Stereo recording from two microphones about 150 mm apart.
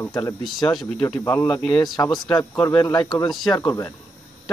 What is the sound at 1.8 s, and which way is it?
Speech, 30° left (ahead or behind).